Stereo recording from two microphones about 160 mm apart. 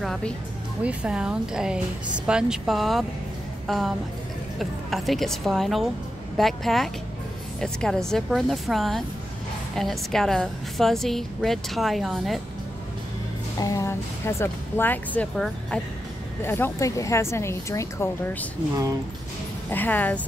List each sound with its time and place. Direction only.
0.0 s a woman's voice: 5° left (ahead or behind)
13.6 s speech: 20° left (ahead or behind)
19.7 s speech: 10° left (ahead or behind)